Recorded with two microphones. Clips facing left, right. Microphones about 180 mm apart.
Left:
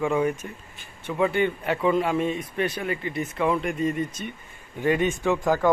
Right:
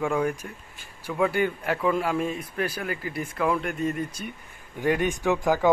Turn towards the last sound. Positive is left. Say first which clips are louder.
# even
turn(degrees=0)  # may be behind; listen again after turning